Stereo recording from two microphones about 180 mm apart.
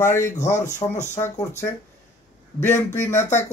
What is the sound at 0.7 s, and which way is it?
Speech, 40° left (ahead or behind).